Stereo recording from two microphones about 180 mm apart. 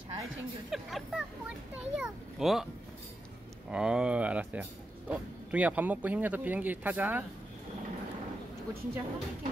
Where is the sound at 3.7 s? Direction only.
5° right (ahead or behind).